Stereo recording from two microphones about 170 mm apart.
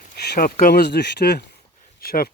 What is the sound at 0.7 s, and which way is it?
Speech, 75° left (ahead or behind).